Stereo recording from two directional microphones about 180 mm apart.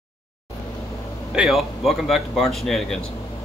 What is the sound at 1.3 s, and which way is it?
Speech, centre (ahead or behind).